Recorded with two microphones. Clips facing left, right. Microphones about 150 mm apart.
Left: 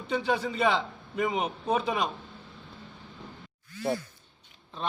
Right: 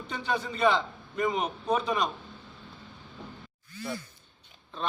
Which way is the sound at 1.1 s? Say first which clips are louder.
Even; 10° left (ahead or behind).